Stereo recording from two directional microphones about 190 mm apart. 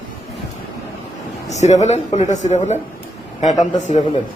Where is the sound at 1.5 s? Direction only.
35° left (ahead or behind).